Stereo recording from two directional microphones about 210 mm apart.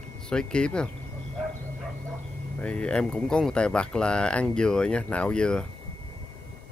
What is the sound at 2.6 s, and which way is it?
Speech, 5° left (ahead or behind).